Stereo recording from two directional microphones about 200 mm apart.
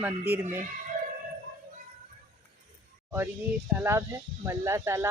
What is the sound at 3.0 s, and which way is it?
Speech, 10° right (ahead or behind).